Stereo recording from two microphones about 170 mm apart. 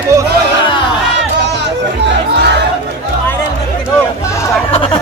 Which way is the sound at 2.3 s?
80° right.